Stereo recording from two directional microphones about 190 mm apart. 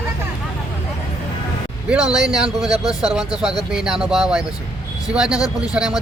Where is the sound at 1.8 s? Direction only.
5° right (ahead or behind).